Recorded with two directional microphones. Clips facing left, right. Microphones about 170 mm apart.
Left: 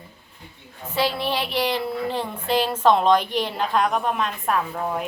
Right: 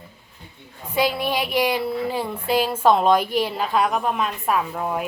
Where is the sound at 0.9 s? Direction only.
15° right (ahead or behind).